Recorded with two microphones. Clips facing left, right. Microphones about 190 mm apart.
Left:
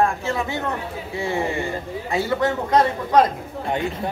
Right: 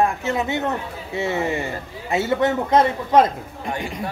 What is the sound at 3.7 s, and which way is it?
Speech, 20° left (ahead or behind).